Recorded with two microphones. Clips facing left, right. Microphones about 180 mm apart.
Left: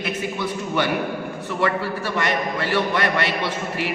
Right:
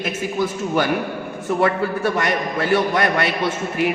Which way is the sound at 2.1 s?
45° right (ahead or behind).